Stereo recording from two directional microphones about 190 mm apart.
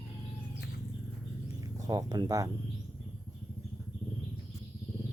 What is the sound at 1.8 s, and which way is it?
Speech, 20° right (ahead or behind).